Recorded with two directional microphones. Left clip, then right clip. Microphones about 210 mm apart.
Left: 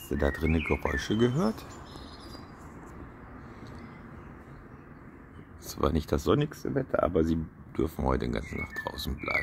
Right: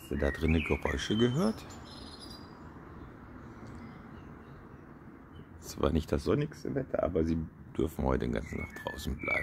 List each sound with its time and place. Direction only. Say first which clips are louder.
0.1 s speech: left 3 dB; 5° left (ahead or behind)
5.7 s speech: left 2 dB; centre (ahead or behind)
6.1 s speech: left 4 dB; 15° left (ahead or behind)
7.7 s speech: left 2 dB; centre (ahead or behind)